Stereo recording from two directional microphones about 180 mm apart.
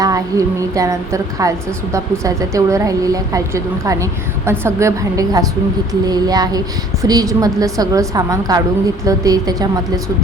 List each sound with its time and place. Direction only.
0.0 s a woman's voice: 20° right (ahead or behind)